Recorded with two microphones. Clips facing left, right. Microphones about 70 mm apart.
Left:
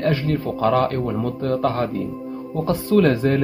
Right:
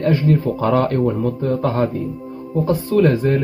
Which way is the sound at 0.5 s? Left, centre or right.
Right.